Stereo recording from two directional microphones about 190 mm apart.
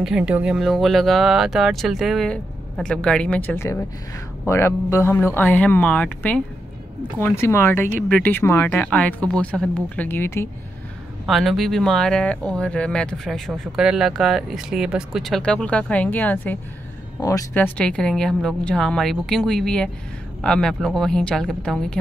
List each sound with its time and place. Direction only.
0.0 s speech: 5° right (ahead or behind); by 10.5 s 10° left (ahead or behind)
11.2 s speech: centre (ahead or behind); by 17.6 s 15° left (ahead or behind)
17.7 s speech: 5° left (ahead or behind)